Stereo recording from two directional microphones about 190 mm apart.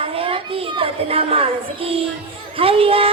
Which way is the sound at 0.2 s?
30° right (ahead or behind).